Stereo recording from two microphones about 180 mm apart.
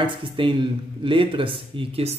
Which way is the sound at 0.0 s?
30° right (ahead or behind).